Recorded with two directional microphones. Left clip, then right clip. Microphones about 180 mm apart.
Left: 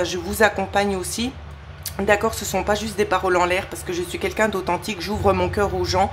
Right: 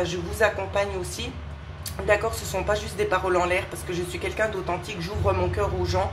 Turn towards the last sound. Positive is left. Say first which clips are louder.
# left 6 dB
turn(degrees=40)  # may be behind; listen again after turning